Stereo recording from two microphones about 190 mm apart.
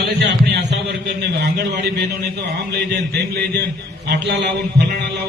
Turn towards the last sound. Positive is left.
turn(degrees=-55)  # may be behind; listen again after turning